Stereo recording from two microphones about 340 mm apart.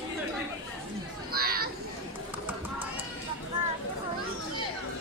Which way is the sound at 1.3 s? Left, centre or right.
Right.